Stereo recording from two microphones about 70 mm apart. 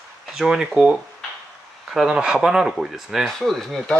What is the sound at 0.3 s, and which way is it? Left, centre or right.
Speech, centre.